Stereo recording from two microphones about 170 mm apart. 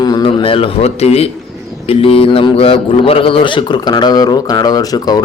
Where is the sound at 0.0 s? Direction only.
25° left (ahead or behind).